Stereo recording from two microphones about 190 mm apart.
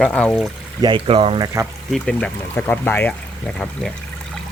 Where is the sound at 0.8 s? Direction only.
25° right (ahead or behind).